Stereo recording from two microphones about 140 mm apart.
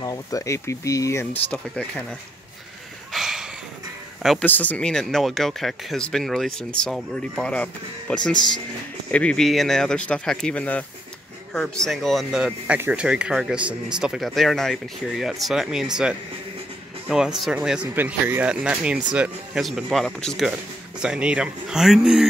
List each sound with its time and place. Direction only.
0.0 s speech: 25° left (ahead or behind)
3.1 s a sound: 5° right (ahead or behind)
4.2 s speech: centre (ahead or behind)
4.5 s speech: 10° left (ahead or behind)
17.4 s speech: 5° right (ahead or behind)